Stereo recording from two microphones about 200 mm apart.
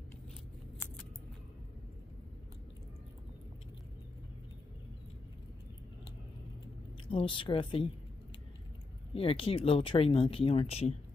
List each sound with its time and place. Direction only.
7.1 s speech: 25° left (ahead or behind)
9.1 s speech: 25° left (ahead or behind)